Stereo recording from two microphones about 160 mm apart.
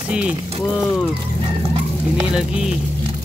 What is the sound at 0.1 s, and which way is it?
Frying, 5° right (ahead or behind).